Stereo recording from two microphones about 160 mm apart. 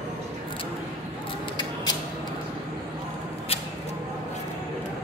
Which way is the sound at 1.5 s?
25° left (ahead or behind).